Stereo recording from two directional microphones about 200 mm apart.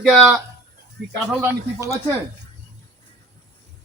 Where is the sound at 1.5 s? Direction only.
15° right (ahead or behind).